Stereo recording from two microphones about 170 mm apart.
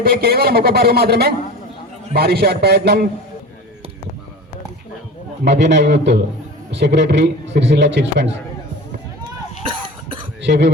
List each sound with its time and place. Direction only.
0.0 s speech: 65° right (ahead or behind)
5.5 s a man's voice: 90° right
10.4 s speech: 90° right